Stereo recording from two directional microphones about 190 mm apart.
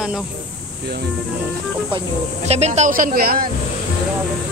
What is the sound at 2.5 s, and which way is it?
Speech, 35° right (ahead or behind).